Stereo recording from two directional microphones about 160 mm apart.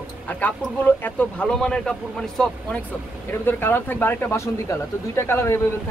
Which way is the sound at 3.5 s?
15° left (ahead or behind).